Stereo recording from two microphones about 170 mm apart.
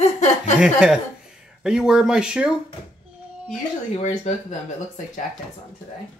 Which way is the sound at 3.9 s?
45° left (ahead or behind).